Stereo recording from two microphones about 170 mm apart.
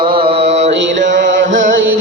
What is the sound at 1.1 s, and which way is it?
Music, 90° right.